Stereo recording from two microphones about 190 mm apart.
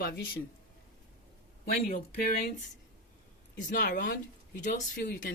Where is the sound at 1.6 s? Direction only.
45° left (ahead or behind).